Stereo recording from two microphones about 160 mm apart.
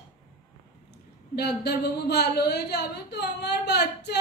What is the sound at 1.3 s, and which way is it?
Speech, 90° left.